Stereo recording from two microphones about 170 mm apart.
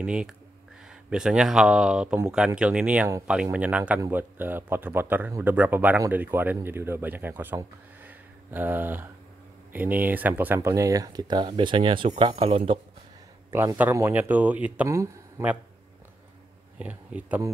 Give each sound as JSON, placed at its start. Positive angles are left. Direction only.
{"t": 0.0, "sound": "speech", "side_deg": -5}
{"t": 13.5, "sound": "speech", "side_deg": -15}
{"t": 16.7, "sound": "speech", "side_deg": -10}